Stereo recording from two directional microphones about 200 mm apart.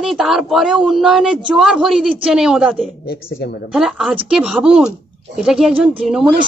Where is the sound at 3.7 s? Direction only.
Centre (ahead or behind).